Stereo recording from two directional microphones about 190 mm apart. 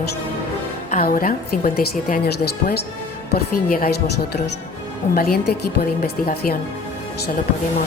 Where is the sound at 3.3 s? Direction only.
50° left (ahead or behind).